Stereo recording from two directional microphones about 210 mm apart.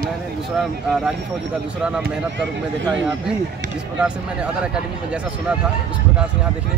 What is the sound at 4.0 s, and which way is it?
Speech, 5° right (ahead or behind).